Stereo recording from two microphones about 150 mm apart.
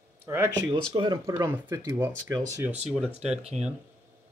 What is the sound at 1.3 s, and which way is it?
Speech, 15° right (ahead or behind).